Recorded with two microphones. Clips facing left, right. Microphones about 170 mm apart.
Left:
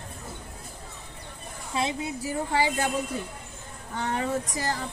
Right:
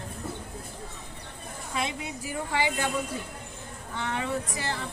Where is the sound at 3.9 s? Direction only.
40° left (ahead or behind).